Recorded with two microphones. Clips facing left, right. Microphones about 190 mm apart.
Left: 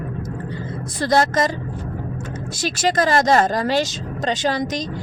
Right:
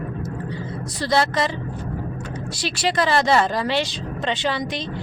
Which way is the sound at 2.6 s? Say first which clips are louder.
Left 3 dB; 45° left (ahead or behind).